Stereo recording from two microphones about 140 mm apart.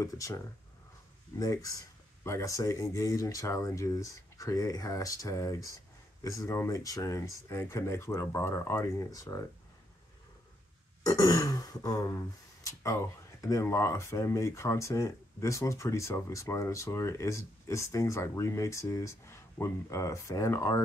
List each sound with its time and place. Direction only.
0.0 s speech: 20° left (ahead or behind)
1.4 s speech: 25° left (ahead or behind)
11.1 s speech: 25° left (ahead or behind)